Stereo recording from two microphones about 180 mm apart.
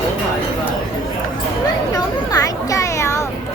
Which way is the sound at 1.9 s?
20° left (ahead or behind).